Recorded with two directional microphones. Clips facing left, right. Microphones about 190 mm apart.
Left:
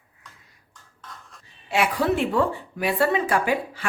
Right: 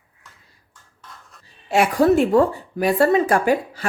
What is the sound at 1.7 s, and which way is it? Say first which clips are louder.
Speech: right 7 dB; 45° right (ahead or behind).